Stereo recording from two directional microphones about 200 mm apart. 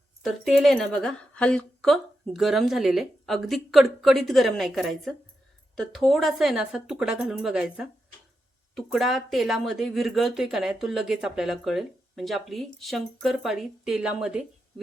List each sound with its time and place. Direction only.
0.2 s speech: centre (ahead or behind)